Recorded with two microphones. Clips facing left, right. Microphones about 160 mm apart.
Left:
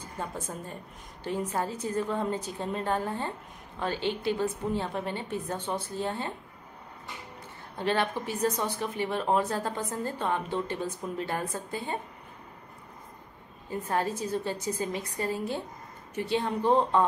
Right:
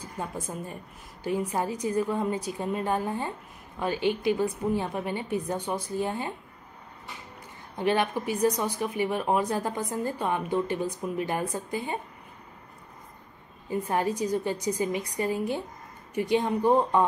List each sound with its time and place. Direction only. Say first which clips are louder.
0.0 s a woman's voice: right 2 dB; 10° right (ahead or behind)
7.7 s speech: right 3 dB; 15° right (ahead or behind)
13.7 s speech: right 3 dB; 15° right (ahead or behind)